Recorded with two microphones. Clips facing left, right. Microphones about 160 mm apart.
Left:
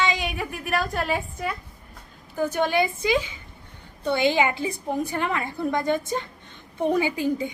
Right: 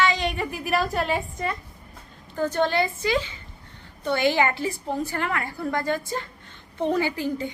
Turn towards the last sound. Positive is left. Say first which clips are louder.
# left 2 dB
turn(degrees=15)  # may be behind; listen again after turning